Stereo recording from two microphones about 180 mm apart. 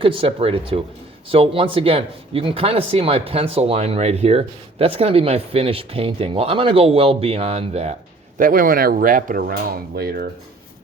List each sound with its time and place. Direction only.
0.0 s speech: 30° right (ahead or behind)
8.4 s speech: 50° right (ahead or behind)